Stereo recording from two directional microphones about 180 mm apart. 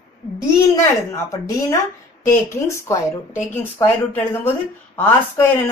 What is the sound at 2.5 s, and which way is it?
Speech, 15° left (ahead or behind).